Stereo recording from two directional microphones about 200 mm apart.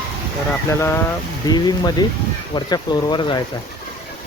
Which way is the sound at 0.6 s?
15° left (ahead or behind).